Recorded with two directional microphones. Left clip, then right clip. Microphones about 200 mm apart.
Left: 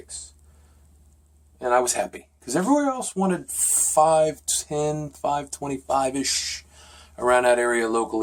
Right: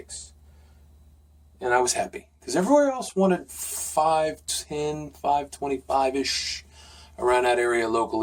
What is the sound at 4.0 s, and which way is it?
Speech, 40° left (ahead or behind).